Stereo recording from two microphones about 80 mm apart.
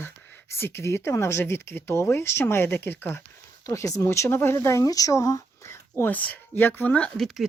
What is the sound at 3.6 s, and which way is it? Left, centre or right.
Speech, left.